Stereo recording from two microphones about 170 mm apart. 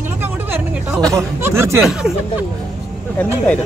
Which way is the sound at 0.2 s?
10° right (ahead or behind).